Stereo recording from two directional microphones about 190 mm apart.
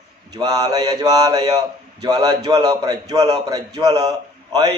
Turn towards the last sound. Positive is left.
turn(degrees=-20)  # may be behind; listen again after turning